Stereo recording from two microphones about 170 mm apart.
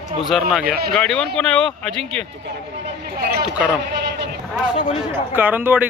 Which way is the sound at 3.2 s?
65° right (ahead or behind).